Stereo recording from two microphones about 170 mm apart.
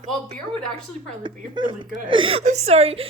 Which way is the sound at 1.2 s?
25° right (ahead or behind).